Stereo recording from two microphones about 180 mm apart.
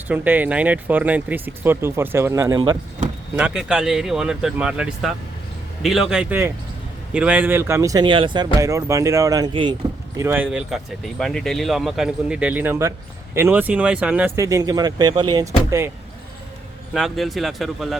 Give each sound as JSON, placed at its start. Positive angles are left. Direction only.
{"t": 0.1, "sound": "speech", "side_deg": -10}
{"t": 3.3, "sound": "speech", "side_deg": -5}
{"t": 10.2, "sound": "speech", "side_deg": -10}
{"t": 16.9, "sound": "speech", "side_deg": 0}